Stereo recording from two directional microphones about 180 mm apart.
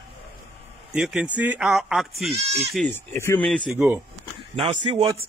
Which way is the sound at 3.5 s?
Centre (ahead or behind).